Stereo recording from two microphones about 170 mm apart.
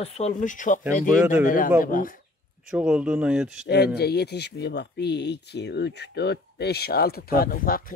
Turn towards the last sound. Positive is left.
turn(degrees=60)  # may be behind; listen again after turning